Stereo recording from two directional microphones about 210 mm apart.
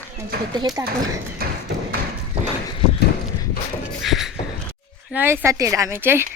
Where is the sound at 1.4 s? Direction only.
45° right (ahead or behind).